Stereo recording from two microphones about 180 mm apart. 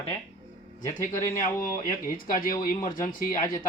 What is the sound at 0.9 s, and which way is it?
Speech, 45° left (ahead or behind).